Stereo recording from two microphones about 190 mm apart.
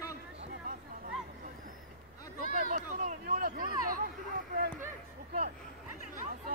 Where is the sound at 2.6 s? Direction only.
40° right (ahead or behind).